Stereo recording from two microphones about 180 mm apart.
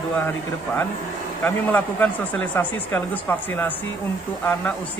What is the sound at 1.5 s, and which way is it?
Speech, 10° left (ahead or behind).